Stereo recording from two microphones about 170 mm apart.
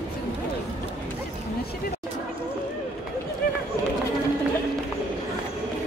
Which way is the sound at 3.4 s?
55° left (ahead or behind).